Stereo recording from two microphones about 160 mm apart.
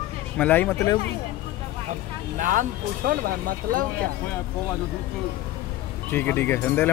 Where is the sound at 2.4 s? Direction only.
55° right (ahead or behind).